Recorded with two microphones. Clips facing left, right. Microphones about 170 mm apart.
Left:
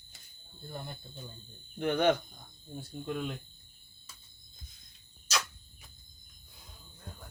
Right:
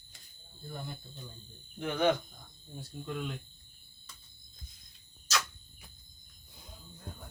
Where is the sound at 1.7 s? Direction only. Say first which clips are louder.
Left 2 dB; 55° left (ahead or behind).